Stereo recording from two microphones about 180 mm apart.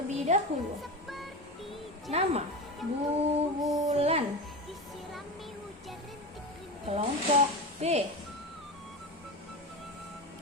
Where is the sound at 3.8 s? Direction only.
35° right (ahead or behind).